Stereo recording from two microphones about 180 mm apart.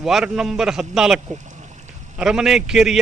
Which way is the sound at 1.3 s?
40° right (ahead or behind).